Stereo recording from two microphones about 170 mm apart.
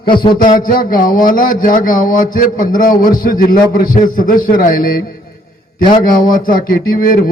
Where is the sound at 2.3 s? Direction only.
55° left (ahead or behind).